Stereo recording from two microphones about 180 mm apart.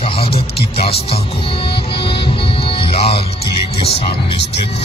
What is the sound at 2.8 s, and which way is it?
Music, 30° left (ahead or behind).